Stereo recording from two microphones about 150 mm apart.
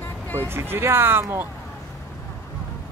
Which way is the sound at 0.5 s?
15° right (ahead or behind).